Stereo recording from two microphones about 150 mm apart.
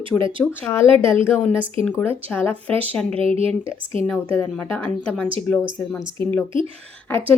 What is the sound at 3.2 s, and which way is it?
Speech, 40° right (ahead or behind).